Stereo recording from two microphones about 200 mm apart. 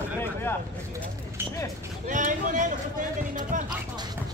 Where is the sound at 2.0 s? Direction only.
40° right (ahead or behind).